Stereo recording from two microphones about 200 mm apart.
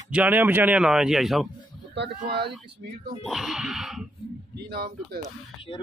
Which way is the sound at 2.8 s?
45° right (ahead or behind).